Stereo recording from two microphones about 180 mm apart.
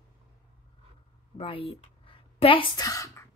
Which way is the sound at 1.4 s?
30° left (ahead or behind).